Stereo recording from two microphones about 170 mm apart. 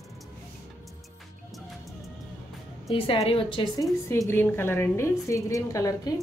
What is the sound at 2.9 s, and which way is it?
Speech, 35° left (ahead or behind).